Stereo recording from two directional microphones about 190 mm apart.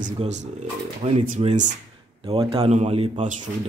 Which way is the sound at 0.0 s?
40° right (ahead or behind).